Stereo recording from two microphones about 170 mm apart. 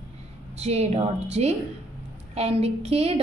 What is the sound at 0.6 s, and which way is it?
A woman's voice, 40° right (ahead or behind).